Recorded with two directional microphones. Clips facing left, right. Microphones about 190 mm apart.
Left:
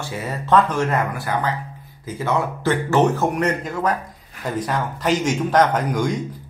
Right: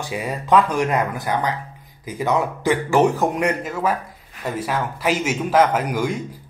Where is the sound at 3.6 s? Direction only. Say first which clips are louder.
Even; 5° right (ahead or behind).